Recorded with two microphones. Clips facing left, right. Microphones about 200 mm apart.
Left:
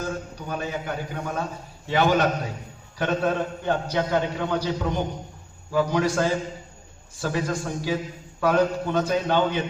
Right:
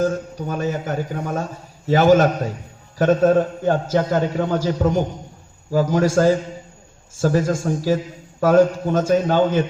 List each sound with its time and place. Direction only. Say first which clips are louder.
0.0 s a man's voice: right 9 dB; 45° right (ahead or behind)